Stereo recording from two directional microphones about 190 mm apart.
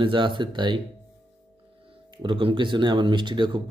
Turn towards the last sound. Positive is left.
turn(degrees=-25)  # may be behind; listen again after turning